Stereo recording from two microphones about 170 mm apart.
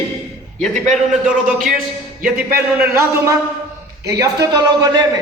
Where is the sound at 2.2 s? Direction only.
60° right (ahead or behind).